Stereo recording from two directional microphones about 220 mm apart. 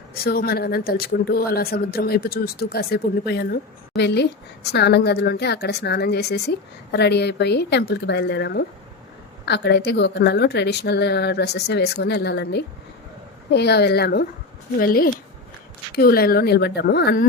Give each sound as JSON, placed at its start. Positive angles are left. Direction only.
{"t": 0.1, "sound": "speech", "side_deg": 45}